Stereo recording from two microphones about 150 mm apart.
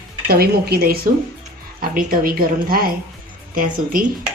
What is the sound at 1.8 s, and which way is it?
Speech, 70° right (ahead or behind).